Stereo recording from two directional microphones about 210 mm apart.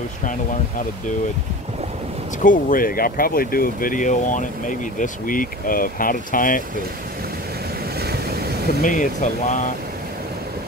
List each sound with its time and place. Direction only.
2.4 s speech: 40° left (ahead or behind)
8.0 s vehicle: 50° right (ahead or behind)
8.8 s speech: 40° left (ahead or behind)